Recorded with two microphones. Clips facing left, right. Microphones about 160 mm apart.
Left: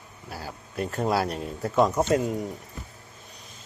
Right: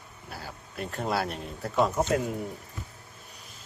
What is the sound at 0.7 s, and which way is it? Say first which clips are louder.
Speech: left 4 dB; centre (ahead or behind).